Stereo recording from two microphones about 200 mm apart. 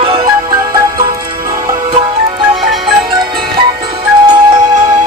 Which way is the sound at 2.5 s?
Centre (ahead or behind).